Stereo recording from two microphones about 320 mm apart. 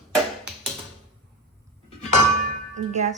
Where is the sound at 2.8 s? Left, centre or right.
Right.